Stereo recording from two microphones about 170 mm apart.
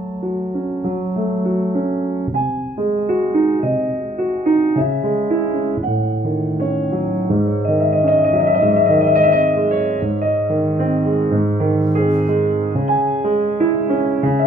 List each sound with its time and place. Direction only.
7.7 s music: 50° right (ahead or behind)